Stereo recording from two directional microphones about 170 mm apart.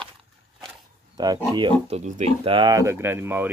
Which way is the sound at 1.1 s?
25° right (ahead or behind).